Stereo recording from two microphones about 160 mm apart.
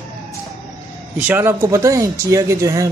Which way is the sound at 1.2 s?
15° right (ahead or behind).